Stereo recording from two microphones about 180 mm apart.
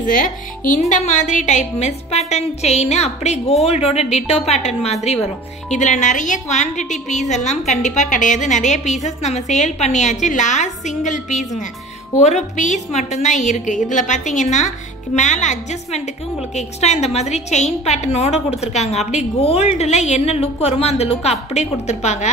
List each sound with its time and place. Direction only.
0.0 s a woman's voice: 50° left (ahead or behind)